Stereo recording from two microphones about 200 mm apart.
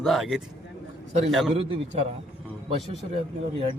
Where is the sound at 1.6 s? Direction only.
30° right (ahead or behind).